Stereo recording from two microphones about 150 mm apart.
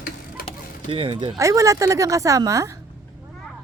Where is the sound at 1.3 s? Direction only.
20° right (ahead or behind).